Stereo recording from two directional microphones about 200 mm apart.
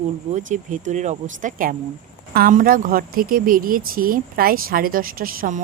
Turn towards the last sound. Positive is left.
turn(degrees=-45)  # may be behind; listen again after turning